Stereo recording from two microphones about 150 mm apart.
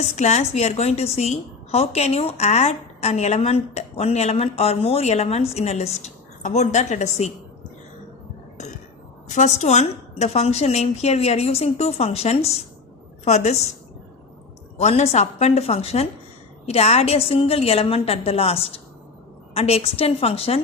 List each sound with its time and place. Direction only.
0.0 s a woman's voice: 50° left (ahead or behind)
9.3 s a woman's voice: 50° left (ahead or behind)
14.8 s a woman's voice: 50° left (ahead or behind)